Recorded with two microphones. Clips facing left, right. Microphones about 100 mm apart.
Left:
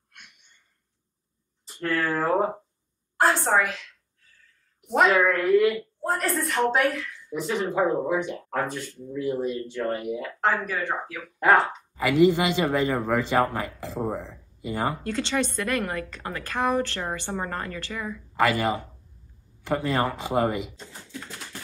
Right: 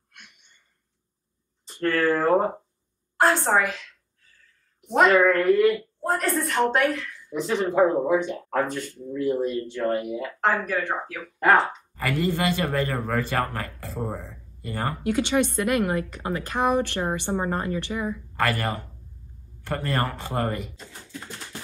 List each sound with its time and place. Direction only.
1.7 s a woman's voice: 5° left (ahead or behind)
4.8 s a woman's voice: centre (ahead or behind)
15.0 s a woman's voice: 15° right (ahead or behind)
18.3 s speech: 15° left (ahead or behind)